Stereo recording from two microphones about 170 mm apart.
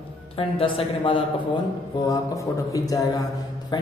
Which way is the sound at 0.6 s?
35° left (ahead or behind).